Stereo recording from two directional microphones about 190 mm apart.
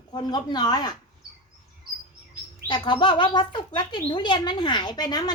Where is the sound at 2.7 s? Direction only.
25° left (ahead or behind).